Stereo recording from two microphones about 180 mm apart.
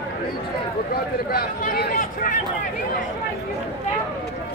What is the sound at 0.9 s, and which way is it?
Speech, 60° left (ahead or behind).